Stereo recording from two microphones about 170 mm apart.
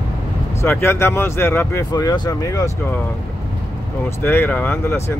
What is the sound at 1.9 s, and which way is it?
Speech, 25° left (ahead or behind).